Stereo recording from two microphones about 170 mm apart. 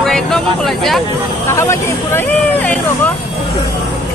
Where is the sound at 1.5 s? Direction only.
15° left (ahead or behind).